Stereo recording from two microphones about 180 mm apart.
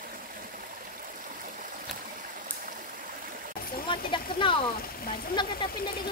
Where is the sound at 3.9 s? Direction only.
25° left (ahead or behind).